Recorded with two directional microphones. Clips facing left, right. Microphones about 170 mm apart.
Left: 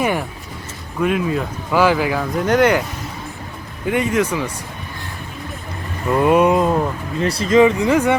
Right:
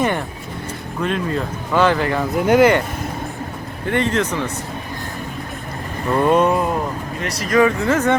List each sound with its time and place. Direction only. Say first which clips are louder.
0.0 s speech: even; 5° left (ahead or behind)
2.3 s speech: right 2 dB; 5° right (ahead or behind)
3.8 s speech: left 1 dB; 10° left (ahead or behind)
6.1 s speech: left 1 dB; 5° left (ahead or behind)
6.5 s speech: left 3 dB; 20° left (ahead or behind)